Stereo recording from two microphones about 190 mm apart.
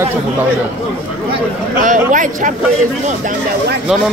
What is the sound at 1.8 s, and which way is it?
Speech, 40° right (ahead or behind).